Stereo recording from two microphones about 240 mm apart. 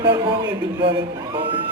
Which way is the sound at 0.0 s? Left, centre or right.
Centre.